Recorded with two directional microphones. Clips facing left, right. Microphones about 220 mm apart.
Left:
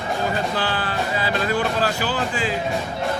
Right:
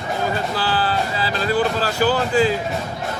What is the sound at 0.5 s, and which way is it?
Music, 35° right (ahead or behind).